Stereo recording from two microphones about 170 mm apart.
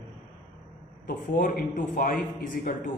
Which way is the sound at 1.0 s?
55° left (ahead or behind).